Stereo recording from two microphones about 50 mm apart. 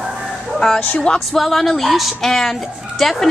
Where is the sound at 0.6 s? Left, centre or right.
Centre.